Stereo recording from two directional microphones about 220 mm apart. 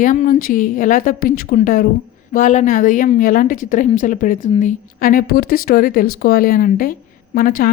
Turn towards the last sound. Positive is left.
turn(degrees=40)  # may be behind; listen again after turning